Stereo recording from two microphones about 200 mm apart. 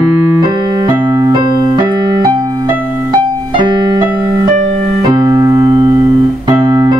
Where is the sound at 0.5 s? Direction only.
20° right (ahead or behind).